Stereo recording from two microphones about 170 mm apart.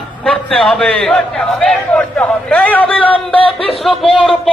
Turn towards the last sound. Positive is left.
turn(degrees=0)  # may be behind; listen again after turning